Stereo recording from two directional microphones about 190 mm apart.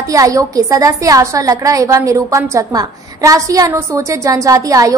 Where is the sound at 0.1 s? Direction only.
15° right (ahead or behind).